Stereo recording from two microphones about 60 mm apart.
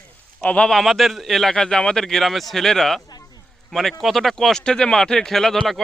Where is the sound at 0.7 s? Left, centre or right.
Centre.